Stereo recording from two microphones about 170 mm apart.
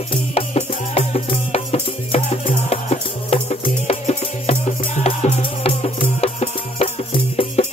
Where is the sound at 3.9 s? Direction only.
40° left (ahead or behind).